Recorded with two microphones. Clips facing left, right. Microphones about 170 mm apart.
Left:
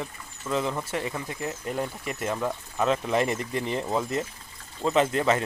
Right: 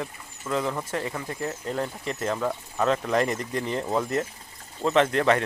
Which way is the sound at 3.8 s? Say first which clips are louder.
Right 2 dB; centre (ahead or behind).